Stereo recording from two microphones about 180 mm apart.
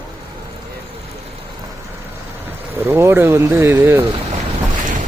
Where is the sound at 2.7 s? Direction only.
15° right (ahead or behind).